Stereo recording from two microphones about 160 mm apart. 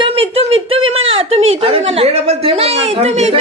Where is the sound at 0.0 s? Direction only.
35° right (ahead or behind).